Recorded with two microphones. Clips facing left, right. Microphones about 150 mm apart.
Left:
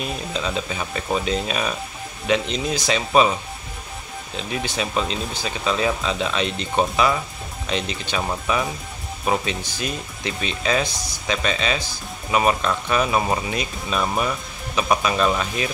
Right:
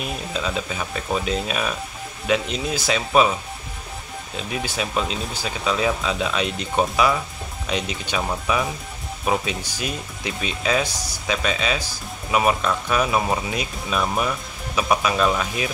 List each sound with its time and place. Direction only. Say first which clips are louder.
0.0 s speech: left 1 dB; 5° right (ahead or behind)
4.4 s speech: left 1 dB; 5° right (ahead or behind)
8.2 s speech: even; centre (ahead or behind)